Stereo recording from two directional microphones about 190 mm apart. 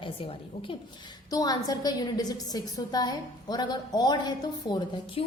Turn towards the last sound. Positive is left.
turn(degrees=25)  # may be behind; listen again after turning